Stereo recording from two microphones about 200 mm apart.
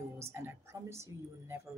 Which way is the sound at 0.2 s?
10° right (ahead or behind).